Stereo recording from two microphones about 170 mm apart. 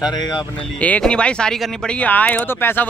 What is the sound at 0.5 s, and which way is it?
Speech, 10° left (ahead or behind).